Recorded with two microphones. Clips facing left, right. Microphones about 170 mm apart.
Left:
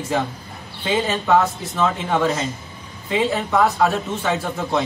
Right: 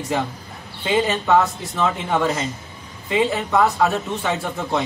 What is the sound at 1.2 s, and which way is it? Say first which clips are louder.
A man's voice: even; centre (ahead or behind).